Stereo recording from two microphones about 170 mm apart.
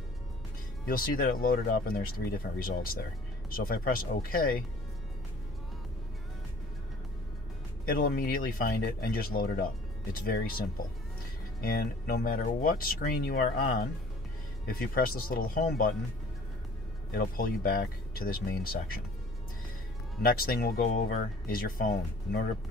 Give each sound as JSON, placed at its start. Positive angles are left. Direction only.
{"t": 0.8, "sound": "speech", "side_deg": 60}
{"t": 7.8, "sound": "speech", "side_deg": 60}
{"t": 11.6, "sound": "speech", "side_deg": 65}
{"t": 17.1, "sound": "speech", "side_deg": 55}
{"t": 20.2, "sound": "speech", "side_deg": 60}